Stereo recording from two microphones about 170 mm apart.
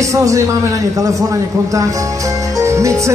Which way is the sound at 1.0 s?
20° right (ahead or behind).